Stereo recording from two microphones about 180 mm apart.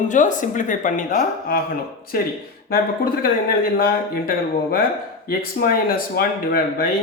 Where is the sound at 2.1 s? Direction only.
55° left (ahead or behind).